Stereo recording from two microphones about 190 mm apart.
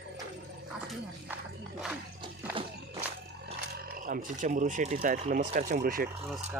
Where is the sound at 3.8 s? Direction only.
50° right (ahead or behind).